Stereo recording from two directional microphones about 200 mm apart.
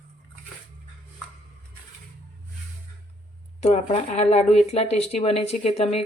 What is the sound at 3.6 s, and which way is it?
Speech, 30° left (ahead or behind).